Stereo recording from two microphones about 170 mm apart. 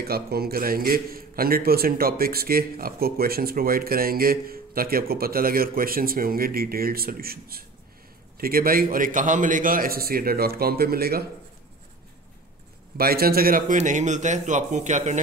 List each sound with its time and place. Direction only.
0.0 s a man's voice: 65° right (ahead or behind)
12.9 s a man's voice: 60° right (ahead or behind)
13.7 s a man's voice: 45° right (ahead or behind)